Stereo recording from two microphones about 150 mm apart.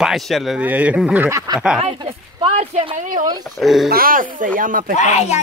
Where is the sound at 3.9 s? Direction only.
75° right (ahead or behind).